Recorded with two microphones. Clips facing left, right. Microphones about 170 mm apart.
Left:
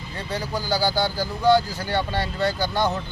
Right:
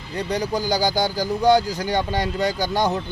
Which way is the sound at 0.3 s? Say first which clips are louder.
Right 3 dB; 15° right (ahead or behind).